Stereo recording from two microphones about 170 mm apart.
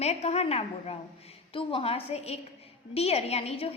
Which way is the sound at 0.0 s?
40° left (ahead or behind).